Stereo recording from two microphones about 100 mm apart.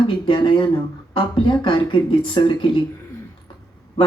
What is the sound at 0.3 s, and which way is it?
Speech, 50° left (ahead or behind).